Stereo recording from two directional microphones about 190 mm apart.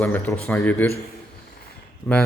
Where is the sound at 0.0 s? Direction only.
10° left (ahead or behind).